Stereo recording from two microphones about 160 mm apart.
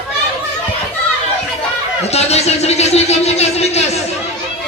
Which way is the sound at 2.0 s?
40° left (ahead or behind).